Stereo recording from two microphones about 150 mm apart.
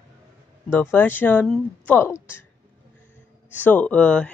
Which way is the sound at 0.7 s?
10° left (ahead or behind).